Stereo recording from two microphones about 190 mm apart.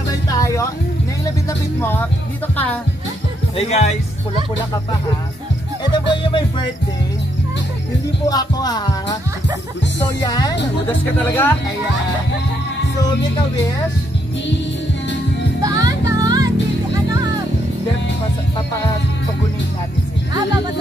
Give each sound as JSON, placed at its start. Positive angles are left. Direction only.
{"t": 0.3, "sound": "music", "side_deg": 15}
{"t": 1.8, "sound": "music", "side_deg": 10}
{"t": 2.5, "sound": "speech", "side_deg": 10}
{"t": 3.5, "sound": "speech", "side_deg": 35}
{"t": 5.9, "sound": "speech", "side_deg": 25}
{"t": 8.3, "sound": "speech", "side_deg": 20}
{"t": 10.9, "sound": "speech", "side_deg": 10}
{"t": 15.6, "sound": "music", "side_deg": -20}